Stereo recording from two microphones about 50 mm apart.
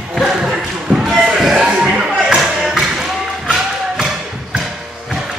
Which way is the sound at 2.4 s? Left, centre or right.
Centre.